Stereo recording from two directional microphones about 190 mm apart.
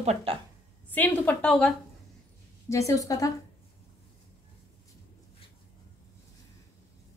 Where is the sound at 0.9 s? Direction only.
10° left (ahead or behind).